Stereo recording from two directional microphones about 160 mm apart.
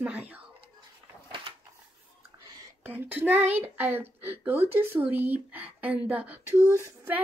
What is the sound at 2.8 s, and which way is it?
Speech, 10° right (ahead or behind).